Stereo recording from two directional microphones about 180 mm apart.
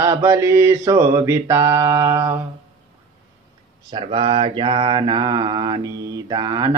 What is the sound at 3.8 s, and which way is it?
Mantra, 25° right (ahead or behind).